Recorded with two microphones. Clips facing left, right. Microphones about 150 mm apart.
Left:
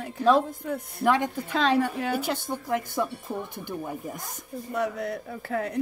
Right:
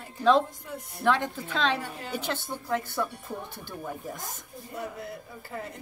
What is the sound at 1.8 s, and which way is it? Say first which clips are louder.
Speech: left 12 dB; 65° left (ahead or behind).